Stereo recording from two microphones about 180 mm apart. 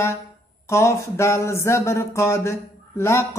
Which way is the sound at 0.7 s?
15° left (ahead or behind).